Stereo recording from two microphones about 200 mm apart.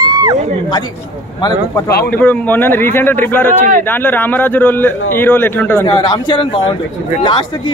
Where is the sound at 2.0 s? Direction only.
10° left (ahead or behind).